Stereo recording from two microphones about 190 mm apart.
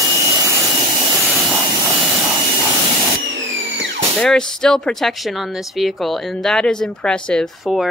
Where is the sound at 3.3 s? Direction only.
75° right (ahead or behind).